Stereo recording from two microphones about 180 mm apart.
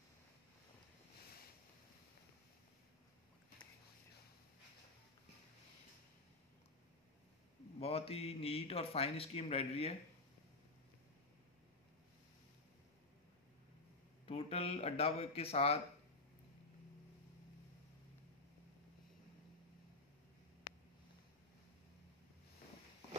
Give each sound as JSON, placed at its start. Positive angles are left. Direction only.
{"t": 7.8, "sound": "speech", "side_deg": 35}
{"t": 14.2, "sound": "speech", "side_deg": 35}